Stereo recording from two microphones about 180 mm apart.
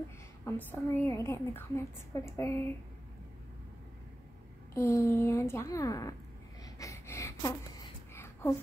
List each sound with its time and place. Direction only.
0.5 s a woman's voice: 10° left (ahead or behind)
4.7 s a woman's voice: 15° left (ahead or behind)
6.6 s a sound: 15° left (ahead or behind)